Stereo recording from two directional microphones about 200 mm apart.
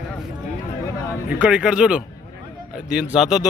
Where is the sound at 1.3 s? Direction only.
5° right (ahead or behind).